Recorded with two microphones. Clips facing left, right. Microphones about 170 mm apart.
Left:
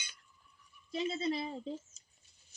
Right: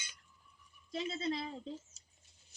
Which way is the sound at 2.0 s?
75° right (ahead or behind).